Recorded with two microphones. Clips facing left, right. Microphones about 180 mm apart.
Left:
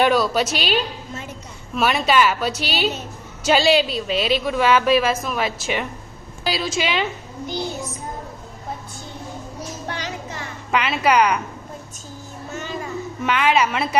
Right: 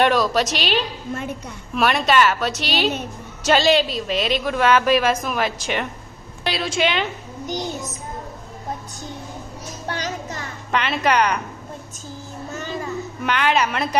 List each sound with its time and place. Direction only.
0.0 s a woman's voice: 5° left (ahead or behind)
9.9 s music: 40° right (ahead or behind)
10.7 s a woman's voice: 5° left (ahead or behind)
13.2 s a woman's voice: centre (ahead or behind)